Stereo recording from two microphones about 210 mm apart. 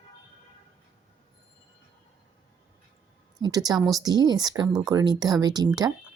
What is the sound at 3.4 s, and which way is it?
A woman's voice, 20° right (ahead or behind).